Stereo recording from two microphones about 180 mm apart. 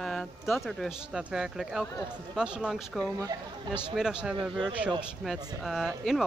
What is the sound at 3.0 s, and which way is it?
Speech, 20° right (ahead or behind).